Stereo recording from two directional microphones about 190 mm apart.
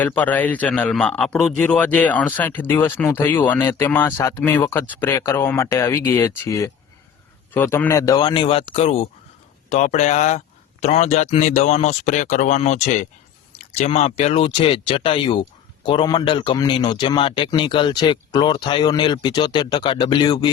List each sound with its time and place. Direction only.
0.0 s a man's voice: 10° left (ahead or behind)